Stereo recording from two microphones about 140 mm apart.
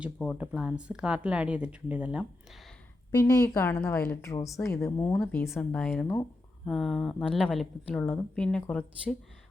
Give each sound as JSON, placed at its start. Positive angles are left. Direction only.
{"t": 0.3, "sound": "speech", "side_deg": -10}
{"t": 3.2, "sound": "a woman's voice", "side_deg": 25}
{"t": 6.7, "sound": "a woman's voice", "side_deg": 0}